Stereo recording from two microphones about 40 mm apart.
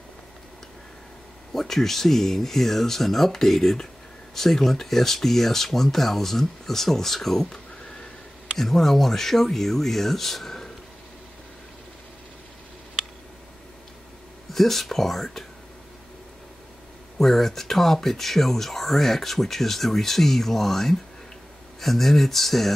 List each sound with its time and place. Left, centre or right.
1.5 s speech: centre
8.5 s speech: centre
14.5 s speech: centre
17.2 s speech: centre